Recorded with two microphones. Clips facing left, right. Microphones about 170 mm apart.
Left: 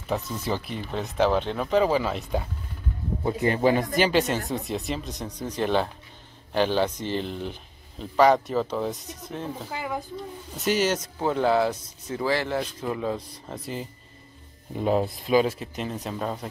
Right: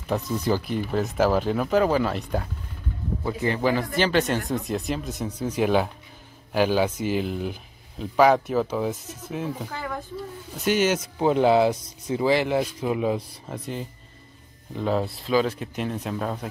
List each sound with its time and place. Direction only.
0.0 s speech: centre (ahead or behind)
3.3 s a man's voice: 25° left (ahead or behind)
4.0 s speech: 5° left (ahead or behind)
9.7 s speech: 10° left (ahead or behind)
10.5 s speech: centre (ahead or behind)
11.1 s speech: 15° right (ahead or behind)
13.5 s speech: centre (ahead or behind)
14.8 s speech: 15° left (ahead or behind)
15.7 s speech: centre (ahead or behind)